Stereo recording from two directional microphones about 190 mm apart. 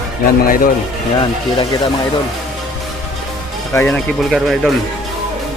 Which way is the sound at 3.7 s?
5° left (ahead or behind).